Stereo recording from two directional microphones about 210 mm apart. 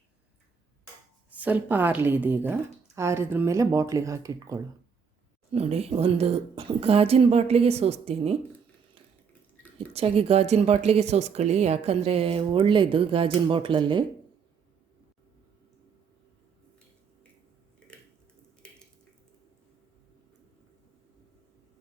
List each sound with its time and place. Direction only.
1.3 s speech: 10° right (ahead or behind)
5.5 s speech: 30° right (ahead or behind)
9.7 s speech: 30° right (ahead or behind)